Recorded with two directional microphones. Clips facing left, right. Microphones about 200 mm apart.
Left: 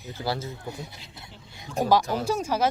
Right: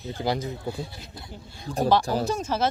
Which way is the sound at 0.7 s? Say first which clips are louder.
Right 4 dB; 20° left (ahead or behind).